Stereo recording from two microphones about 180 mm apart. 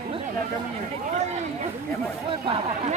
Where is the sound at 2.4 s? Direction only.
30° right (ahead or behind).